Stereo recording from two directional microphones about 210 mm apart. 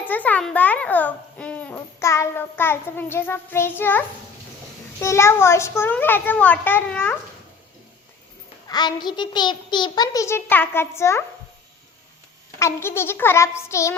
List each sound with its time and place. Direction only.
0.0 s a child's voice: 10° left (ahead or behind)
8.6 s a child's voice: 20° left (ahead or behind)
12.5 s a child's voice: 10° left (ahead or behind)